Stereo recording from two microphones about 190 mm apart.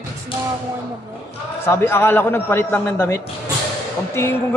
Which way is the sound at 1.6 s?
10° left (ahead or behind).